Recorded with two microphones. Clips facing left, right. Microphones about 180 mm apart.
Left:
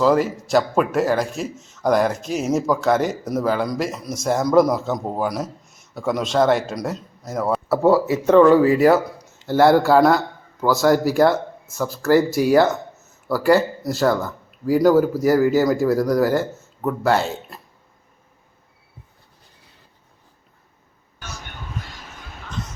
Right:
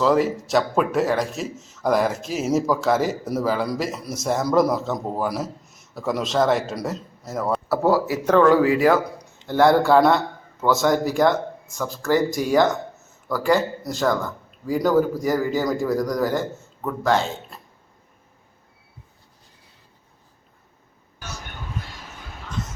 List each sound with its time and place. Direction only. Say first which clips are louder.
0.0 s speech: left 1 dB; centre (ahead or behind)
8.0 s speech: left 4 dB; 25° left (ahead or behind)
8.9 s speech: left 3 dB; 5° left (ahead or behind)